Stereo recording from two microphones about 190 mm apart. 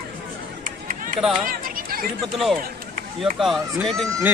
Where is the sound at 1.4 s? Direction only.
50° right (ahead or behind).